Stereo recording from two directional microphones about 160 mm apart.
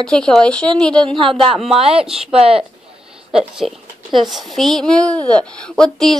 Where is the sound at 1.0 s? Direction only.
30° right (ahead or behind).